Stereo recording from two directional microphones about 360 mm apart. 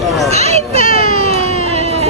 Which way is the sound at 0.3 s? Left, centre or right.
Centre.